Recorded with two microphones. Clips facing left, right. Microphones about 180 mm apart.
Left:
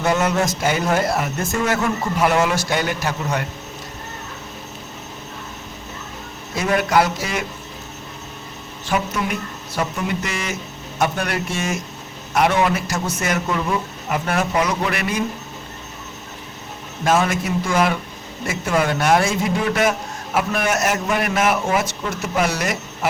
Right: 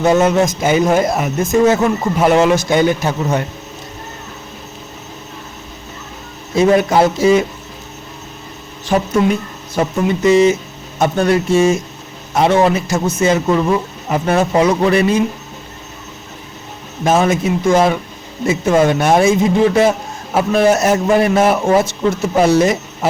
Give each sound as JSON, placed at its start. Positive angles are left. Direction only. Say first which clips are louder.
{"t": 0.0, "sound": "speech", "louder": "right 7 dB", "side_deg": -25}
{"t": 6.5, "sound": "speech", "louder": "right 7 dB", "side_deg": -25}
{"t": 8.9, "sound": "speech", "louder": "right 8 dB", "side_deg": -40}
{"t": 9.8, "sound": "speech", "louder": "right 8 dB", "side_deg": -25}
{"t": 17.0, "sound": "speech", "louder": "right 5 dB", "side_deg": -25}